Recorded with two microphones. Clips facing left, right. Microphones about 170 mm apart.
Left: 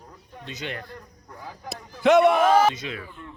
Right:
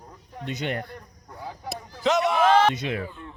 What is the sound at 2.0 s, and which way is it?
Speech, 60° left (ahead or behind).